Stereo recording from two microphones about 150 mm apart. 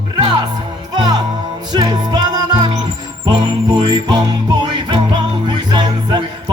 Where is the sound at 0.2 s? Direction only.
30° right (ahead or behind).